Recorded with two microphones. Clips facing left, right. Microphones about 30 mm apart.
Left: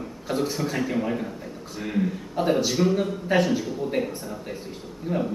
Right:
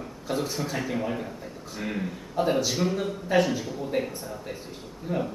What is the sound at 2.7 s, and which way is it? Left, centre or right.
A man's voice, centre.